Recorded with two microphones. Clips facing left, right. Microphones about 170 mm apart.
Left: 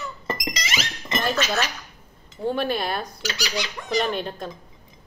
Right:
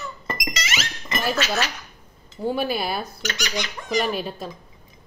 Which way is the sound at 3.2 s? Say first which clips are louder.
Even; 35° left (ahead or behind).